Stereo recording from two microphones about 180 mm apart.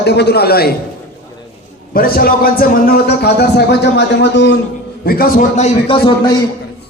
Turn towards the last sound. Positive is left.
turn(degrees=25)  # may be behind; listen again after turning